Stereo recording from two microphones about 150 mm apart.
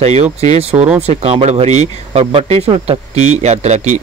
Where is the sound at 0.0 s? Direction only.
45° right (ahead or behind).